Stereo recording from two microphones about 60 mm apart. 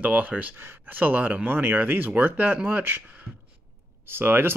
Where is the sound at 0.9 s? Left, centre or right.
Right.